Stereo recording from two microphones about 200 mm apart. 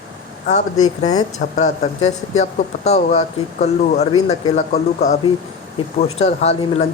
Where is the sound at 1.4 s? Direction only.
35° left (ahead or behind).